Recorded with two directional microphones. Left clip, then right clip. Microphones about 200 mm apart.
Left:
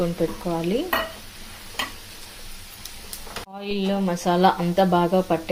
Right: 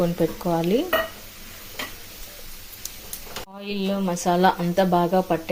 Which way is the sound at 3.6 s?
10° right (ahead or behind).